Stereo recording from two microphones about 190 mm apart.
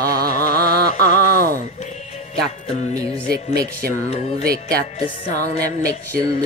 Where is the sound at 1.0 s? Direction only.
50° right (ahead or behind).